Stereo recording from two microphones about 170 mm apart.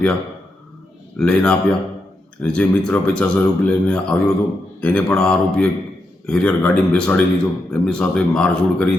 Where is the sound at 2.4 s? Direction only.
5° left (ahead or behind).